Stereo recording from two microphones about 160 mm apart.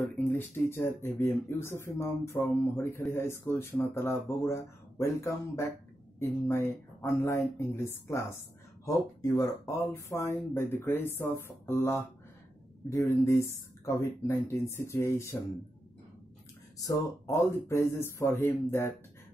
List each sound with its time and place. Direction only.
0.3 s speech: 15° left (ahead or behind)
16.8 s speech: 20° left (ahead or behind)